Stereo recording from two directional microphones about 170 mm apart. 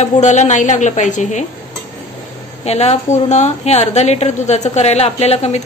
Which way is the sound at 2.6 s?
40° left (ahead or behind).